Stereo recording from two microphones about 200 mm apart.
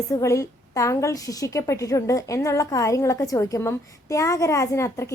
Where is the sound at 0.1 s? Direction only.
15° left (ahead or behind).